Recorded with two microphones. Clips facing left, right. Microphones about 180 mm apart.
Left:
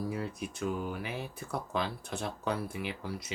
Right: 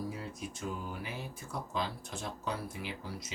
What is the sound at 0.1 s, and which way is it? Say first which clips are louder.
Speech: left 5 dB; 60° left (ahead or behind).